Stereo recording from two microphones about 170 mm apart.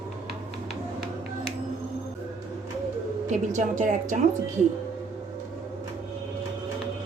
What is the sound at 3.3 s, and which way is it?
Speech, 45° right (ahead or behind).